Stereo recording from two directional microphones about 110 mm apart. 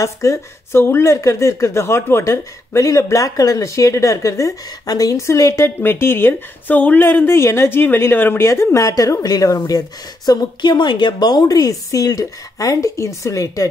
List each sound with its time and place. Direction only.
0.0 s speech: 25° left (ahead or behind)